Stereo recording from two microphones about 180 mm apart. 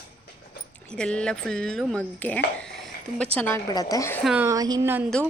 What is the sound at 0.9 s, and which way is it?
A woman's voice, 5° left (ahead or behind).